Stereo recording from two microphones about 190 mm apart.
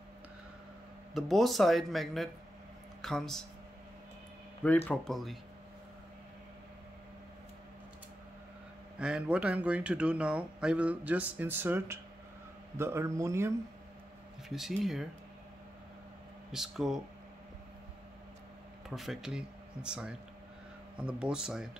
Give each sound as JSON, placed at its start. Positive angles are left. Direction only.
{"t": 1.1, "sound": "speech", "side_deg": 0}
{"t": 4.8, "sound": "speech", "side_deg": 0}
{"t": 8.9, "sound": "a man's voice", "side_deg": -5}
{"t": 14.5, "sound": "speech", "side_deg": 0}
{"t": 16.5, "sound": "speech", "side_deg": 0}
{"t": 18.9, "sound": "speech", "side_deg": 0}